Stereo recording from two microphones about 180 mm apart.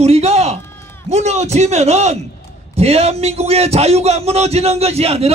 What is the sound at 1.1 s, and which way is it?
A man's voice, 40° right (ahead or behind).